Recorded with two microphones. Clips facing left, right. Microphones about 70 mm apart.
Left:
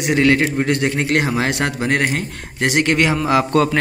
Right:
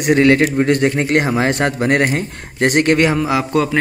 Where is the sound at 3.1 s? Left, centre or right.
Centre.